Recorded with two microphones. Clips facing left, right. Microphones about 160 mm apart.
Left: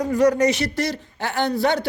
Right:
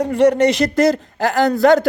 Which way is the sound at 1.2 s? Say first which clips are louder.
Right 7 dB; 90° right.